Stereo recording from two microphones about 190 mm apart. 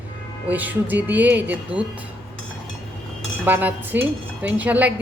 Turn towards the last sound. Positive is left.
turn(degrees=-10)  # may be behind; listen again after turning